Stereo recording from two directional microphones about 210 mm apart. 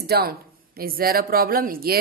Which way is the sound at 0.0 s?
50° right (ahead or behind).